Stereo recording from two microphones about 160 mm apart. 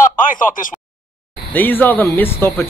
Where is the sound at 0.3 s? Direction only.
55° left (ahead or behind).